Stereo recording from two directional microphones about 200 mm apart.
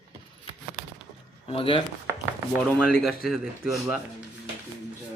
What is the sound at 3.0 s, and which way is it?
Speech, centre (ahead or behind).